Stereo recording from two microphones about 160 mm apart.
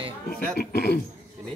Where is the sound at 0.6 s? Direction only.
80° left.